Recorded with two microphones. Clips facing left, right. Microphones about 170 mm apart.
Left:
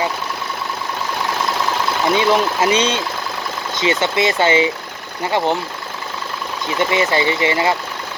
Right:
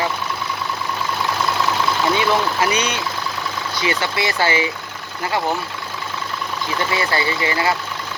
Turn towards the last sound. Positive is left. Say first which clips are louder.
# left 3 dB
turn(degrees=20)  # may be behind; listen again after turning